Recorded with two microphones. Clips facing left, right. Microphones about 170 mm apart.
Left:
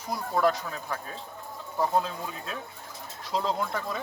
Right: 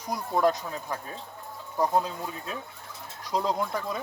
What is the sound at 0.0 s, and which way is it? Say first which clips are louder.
Speech: right 1 dB; 15° right (ahead or behind).